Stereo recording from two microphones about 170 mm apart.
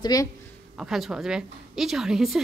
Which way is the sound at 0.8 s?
5° right (ahead or behind).